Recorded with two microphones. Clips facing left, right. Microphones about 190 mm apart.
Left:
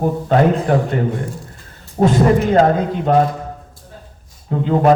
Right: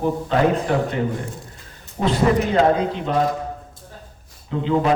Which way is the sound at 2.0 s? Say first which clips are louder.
Left 5 dB; 45° left (ahead or behind).